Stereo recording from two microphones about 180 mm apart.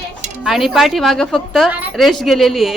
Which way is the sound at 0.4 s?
Centre (ahead or behind).